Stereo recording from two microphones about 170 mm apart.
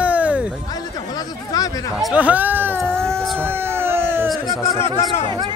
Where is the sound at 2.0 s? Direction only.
5° right (ahead or behind).